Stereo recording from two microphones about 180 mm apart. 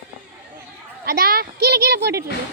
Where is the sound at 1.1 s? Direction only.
55° right (ahead or behind).